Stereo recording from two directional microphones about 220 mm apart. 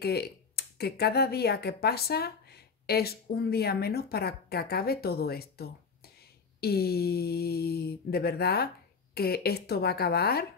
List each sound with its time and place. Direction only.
0.0 s speech: 45° left (ahead or behind)